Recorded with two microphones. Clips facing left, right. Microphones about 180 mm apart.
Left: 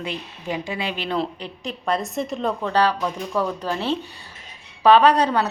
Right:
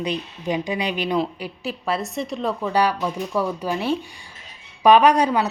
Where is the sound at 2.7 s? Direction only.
10° right (ahead or behind).